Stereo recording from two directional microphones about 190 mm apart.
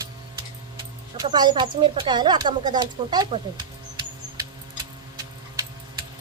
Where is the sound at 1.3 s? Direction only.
25° right (ahead or behind).